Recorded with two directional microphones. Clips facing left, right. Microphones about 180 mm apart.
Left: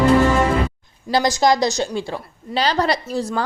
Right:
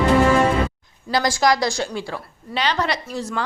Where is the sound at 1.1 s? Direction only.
25° left (ahead or behind).